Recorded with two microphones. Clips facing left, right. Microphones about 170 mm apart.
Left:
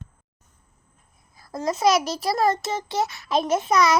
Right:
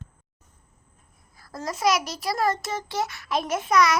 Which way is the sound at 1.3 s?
20° left (ahead or behind).